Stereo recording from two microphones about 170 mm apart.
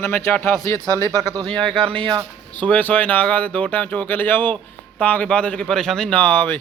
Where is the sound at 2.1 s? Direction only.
25° right (ahead or behind).